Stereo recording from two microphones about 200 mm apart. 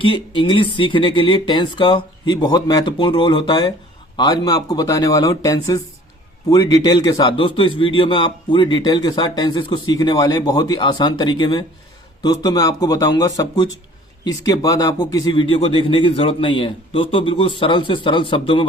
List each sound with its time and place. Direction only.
0.0 s speech: 25° left (ahead or behind)